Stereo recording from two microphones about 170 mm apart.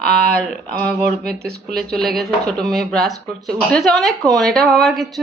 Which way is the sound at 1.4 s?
70° right (ahead or behind).